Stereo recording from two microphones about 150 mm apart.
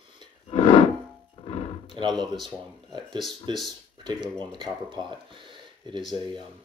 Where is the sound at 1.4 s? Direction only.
40° left (ahead or behind).